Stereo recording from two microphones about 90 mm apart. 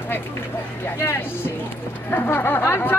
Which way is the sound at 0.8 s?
25° left (ahead or behind).